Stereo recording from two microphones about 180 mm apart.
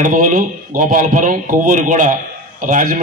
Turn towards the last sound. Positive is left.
turn(degrees=-45)  # may be behind; listen again after turning